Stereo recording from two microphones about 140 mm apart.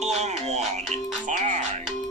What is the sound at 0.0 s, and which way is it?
Music, 50° right (ahead or behind).